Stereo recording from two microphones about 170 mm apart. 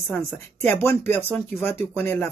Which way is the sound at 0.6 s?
10° left (ahead or behind).